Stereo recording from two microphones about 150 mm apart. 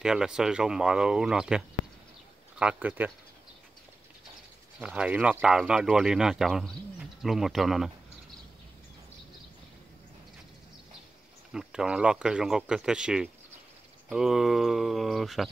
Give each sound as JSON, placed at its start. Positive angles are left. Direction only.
{"t": 0.0, "sound": "speech", "side_deg": -5}
{"t": 2.6, "sound": "speech", "side_deg": -10}
{"t": 4.7, "sound": "speech", "side_deg": -5}
{"t": 11.5, "sound": "speech", "side_deg": -5}